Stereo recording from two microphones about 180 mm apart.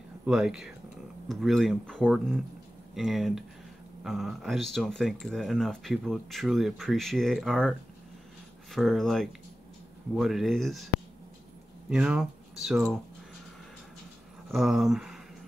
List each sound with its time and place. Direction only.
0.2 s speech: 5° right (ahead or behind)
8.7 s speech: centre (ahead or behind)
11.9 s speech: 5° right (ahead or behind)
14.5 s speech: centre (ahead or behind)